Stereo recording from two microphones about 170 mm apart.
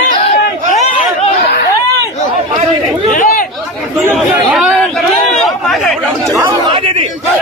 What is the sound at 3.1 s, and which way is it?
Chatter, 50° left (ahead or behind).